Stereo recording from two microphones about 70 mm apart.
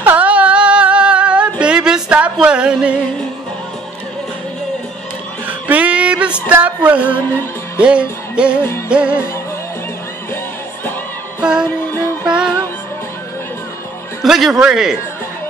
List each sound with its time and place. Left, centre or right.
0.0 s a sound: right
2.4 s music: centre
5.7 s music: right
7.2 s music: left
7.8 s music: centre
11.4 s music: centre
14.2 s music: centre